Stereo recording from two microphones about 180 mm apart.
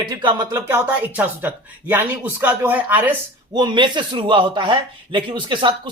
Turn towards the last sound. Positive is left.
turn(degrees=-25)  # may be behind; listen again after turning